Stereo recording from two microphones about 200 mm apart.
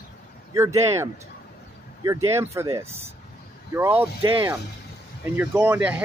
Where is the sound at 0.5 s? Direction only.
15° right (ahead or behind).